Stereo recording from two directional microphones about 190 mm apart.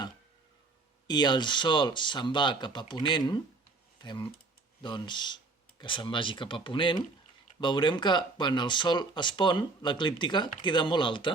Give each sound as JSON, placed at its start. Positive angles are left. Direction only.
{"t": 1.0, "sound": "speech", "side_deg": 25}